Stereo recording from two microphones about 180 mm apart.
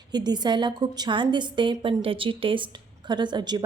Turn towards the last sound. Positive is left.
turn(degrees=-25)  # may be behind; listen again after turning